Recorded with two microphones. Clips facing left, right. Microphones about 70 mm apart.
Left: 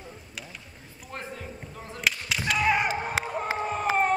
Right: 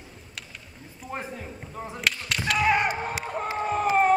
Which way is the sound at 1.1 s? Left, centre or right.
Centre.